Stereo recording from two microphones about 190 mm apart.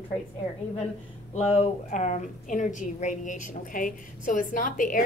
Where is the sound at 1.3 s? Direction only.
30° left (ahead or behind).